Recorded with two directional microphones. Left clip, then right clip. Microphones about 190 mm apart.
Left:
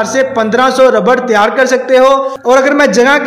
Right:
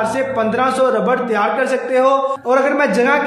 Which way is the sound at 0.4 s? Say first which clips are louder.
Left 7 dB; 40° left (ahead or behind).